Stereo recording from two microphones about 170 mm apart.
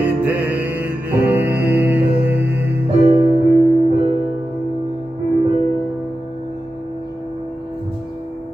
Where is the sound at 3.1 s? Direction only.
30° right (ahead or behind).